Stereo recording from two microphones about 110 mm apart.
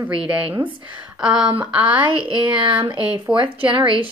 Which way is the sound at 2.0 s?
50° right (ahead or behind).